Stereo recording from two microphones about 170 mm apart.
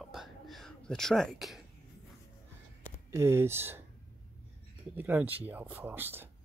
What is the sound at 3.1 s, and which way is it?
Speech, 15° right (ahead or behind).